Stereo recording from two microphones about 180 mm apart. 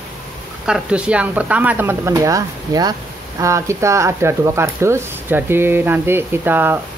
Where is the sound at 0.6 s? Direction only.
5° right (ahead or behind).